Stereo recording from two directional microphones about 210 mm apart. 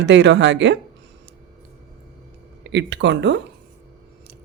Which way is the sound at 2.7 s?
55° right (ahead or behind).